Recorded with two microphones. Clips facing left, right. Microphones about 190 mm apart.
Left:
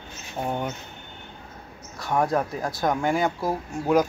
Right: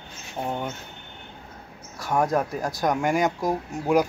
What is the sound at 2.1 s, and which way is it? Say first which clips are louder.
Speech: even; centre (ahead or behind).